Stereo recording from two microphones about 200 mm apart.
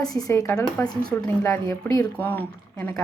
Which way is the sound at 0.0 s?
20° left (ahead or behind).